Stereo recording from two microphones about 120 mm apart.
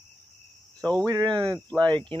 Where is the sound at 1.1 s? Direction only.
30° right (ahead or behind).